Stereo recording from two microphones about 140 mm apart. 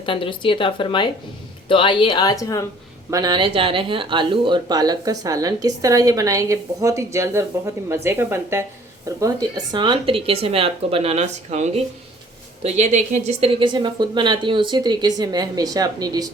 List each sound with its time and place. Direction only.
0.0 s a woman's voice: 40° left (ahead or behind)
3.1 s speech: 30° right (ahead or behind)